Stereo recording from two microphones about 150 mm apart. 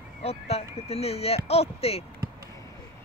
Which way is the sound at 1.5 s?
45° left (ahead or behind).